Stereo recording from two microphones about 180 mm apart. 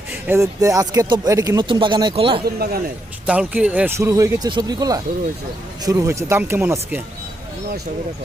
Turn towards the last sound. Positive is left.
turn(degrees=-10)  # may be behind; listen again after turning